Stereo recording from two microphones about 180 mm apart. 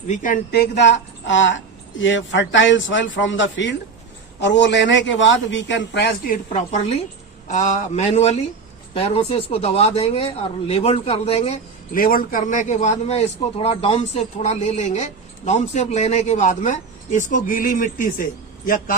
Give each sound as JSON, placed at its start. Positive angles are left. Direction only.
{"t": 0.1, "sound": "speech", "side_deg": 45}
{"t": 1.3, "sound": "speech", "side_deg": 90}
{"t": 4.4, "sound": "a man's voice", "side_deg": 75}
{"t": 11.9, "sound": "a man's voice", "side_deg": 50}